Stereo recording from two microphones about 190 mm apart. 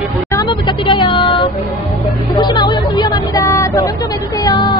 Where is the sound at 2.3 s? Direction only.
20° left (ahead or behind).